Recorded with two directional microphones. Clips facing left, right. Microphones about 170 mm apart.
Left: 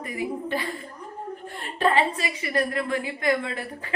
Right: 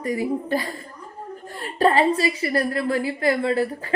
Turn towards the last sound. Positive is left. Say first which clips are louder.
# right 11 dB
turn(degrees=-40)  # may be behind; listen again after turning